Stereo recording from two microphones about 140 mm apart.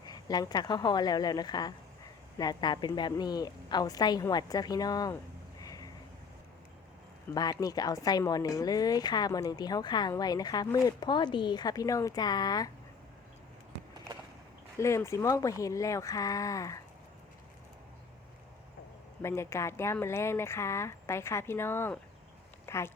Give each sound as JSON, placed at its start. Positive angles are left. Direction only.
{"t": 0.1, "sound": "a woman's voice", "side_deg": 30}
{"t": 5.6, "sound": "a sound", "side_deg": 25}
{"t": 7.3, "sound": "a woman's voice", "side_deg": 25}
{"t": 14.8, "sound": "a woman's voice", "side_deg": 20}
{"t": 19.2, "sound": "a woman's voice", "side_deg": 20}
{"t": 22.6, "sound": "a sound", "side_deg": 20}